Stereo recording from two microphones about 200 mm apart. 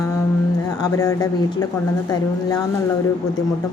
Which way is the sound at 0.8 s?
20° left (ahead or behind).